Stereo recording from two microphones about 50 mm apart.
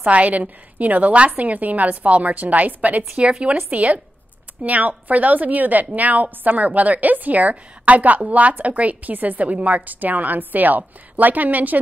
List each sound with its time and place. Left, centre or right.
0.0 s a woman's voice: right